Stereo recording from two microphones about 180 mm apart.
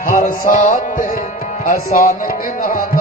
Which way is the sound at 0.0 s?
50° left (ahead or behind).